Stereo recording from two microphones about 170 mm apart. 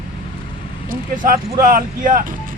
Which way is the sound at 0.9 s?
55° right (ahead or behind).